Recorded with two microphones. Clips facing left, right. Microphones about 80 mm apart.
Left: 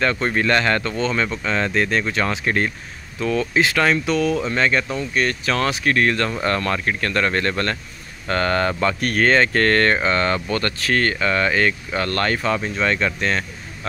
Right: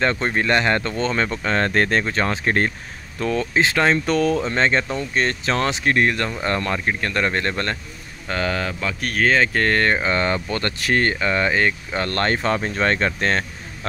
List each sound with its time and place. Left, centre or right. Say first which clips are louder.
0.0 s speech: left 1 dB; right
2.0 s speech: even; right
4.1 s speech: right 1 dB; right
4.4 s speech: even; right
8.3 s speech: left 4 dB; centre; by 13.5 s right